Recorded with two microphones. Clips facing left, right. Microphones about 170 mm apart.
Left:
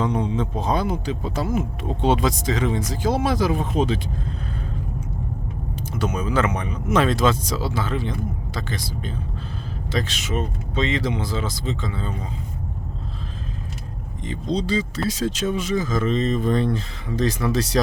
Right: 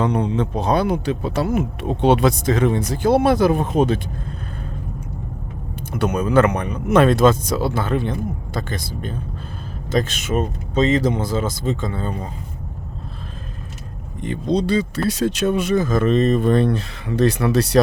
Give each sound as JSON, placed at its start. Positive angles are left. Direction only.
{"t": 0.0, "sound": "speech", "side_deg": -65}
{"t": 5.9, "sound": "speech", "side_deg": -60}
{"t": 14.3, "sound": "speech", "side_deg": -60}